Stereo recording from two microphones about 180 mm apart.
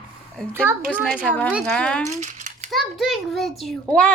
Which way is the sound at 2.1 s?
40° right (ahead or behind).